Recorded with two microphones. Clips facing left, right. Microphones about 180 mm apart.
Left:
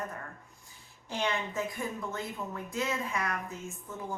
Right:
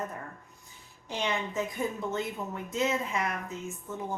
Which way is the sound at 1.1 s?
20° right (ahead or behind).